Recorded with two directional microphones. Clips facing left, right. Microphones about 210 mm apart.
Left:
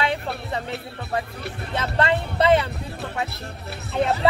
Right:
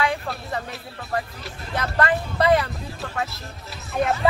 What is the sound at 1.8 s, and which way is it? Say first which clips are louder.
Speech: even; 25° left (ahead or behind).